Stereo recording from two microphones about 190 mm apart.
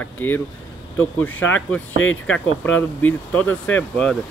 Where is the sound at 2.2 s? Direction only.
5° left (ahead or behind).